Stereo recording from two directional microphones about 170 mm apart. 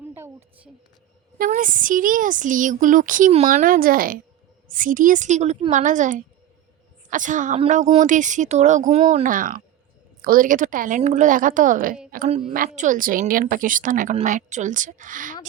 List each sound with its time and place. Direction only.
0.0 s a woman's voice: 15° right (ahead or behind)
1.4 s speech: 50° right (ahead or behind)